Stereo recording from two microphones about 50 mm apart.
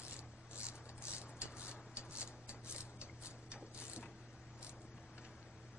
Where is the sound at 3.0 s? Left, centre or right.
Right.